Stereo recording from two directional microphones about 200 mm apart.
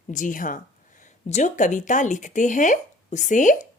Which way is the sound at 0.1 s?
40° left (ahead or behind).